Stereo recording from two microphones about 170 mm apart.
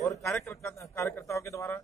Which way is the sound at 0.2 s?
Centre (ahead or behind).